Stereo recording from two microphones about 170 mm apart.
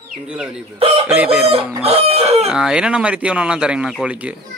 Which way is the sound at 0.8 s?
35° right (ahead or behind).